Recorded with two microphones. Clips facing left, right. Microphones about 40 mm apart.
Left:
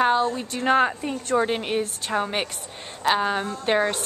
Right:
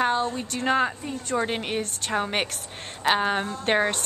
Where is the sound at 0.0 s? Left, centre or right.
Centre.